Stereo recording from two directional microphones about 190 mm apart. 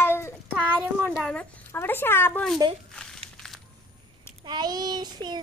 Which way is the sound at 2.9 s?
5° left (ahead or behind).